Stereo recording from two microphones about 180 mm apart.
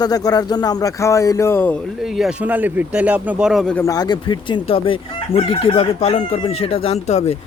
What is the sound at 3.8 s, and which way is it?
Speech, 20° left (ahead or behind).